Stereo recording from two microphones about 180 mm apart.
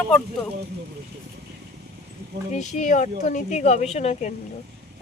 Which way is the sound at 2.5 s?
40° left (ahead or behind).